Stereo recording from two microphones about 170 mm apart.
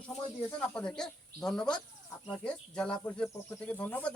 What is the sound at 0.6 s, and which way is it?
Speech, 5° left (ahead or behind).